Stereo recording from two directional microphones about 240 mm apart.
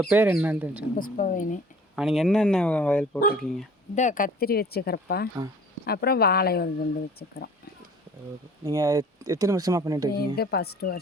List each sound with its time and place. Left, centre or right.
0.0 s speech: centre
0.9 s speech: left
2.0 s speech: centre
3.9 s speech: left
8.6 s speech: centre
10.2 s speech: left